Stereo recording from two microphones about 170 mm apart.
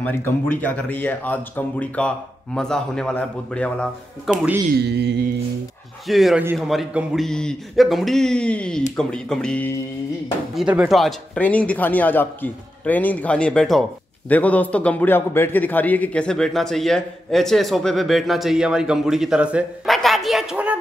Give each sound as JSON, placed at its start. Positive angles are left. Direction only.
{"t": 0.0, "sound": "speech", "side_deg": 10}
{"t": 4.3, "sound": "a man's voice", "side_deg": -5}
{"t": 4.7, "sound": "music", "side_deg": -80}
{"t": 6.0, "sound": "a man's voice", "side_deg": 0}
{"t": 10.5, "sound": "a man's voice", "side_deg": -5}